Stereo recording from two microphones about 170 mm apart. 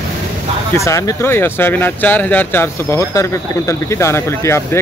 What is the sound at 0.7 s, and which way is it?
Speech, 20° left (ahead or behind).